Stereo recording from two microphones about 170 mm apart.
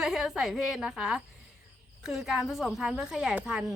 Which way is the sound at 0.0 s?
5° right (ahead or behind).